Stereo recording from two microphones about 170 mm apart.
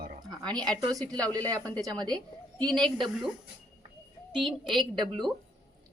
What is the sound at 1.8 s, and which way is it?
Speech, 25° right (ahead or behind).